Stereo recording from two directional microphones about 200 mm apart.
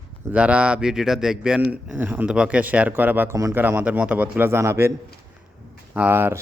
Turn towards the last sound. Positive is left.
turn(degrees=-10)  # may be behind; listen again after turning